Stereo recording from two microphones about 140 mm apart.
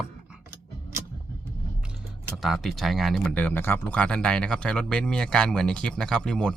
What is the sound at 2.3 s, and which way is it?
Speech, centre (ahead or behind).